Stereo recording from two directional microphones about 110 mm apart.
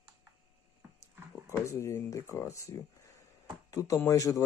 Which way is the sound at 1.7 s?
25° left (ahead or behind).